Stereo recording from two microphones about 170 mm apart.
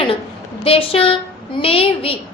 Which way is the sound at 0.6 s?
35° left (ahead or behind).